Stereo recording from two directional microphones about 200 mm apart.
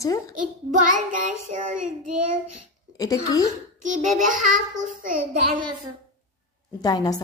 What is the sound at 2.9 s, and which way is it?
Speech, 20° left (ahead or behind).